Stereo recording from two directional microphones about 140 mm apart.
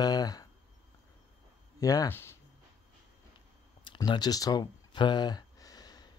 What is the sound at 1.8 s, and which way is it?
Speech, 25° left (ahead or behind).